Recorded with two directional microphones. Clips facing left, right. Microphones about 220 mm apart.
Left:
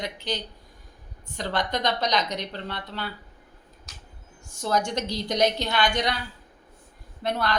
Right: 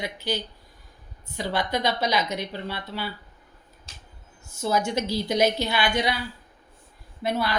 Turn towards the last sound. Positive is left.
turn(degrees=-5)  # may be behind; listen again after turning